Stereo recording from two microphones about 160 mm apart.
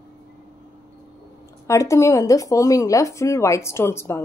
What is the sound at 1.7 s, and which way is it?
A woman's voice, 20° left (ahead or behind).